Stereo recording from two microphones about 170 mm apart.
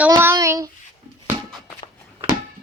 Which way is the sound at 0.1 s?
15° right (ahead or behind).